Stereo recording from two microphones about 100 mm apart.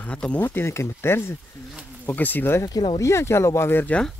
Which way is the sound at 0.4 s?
25° left (ahead or behind).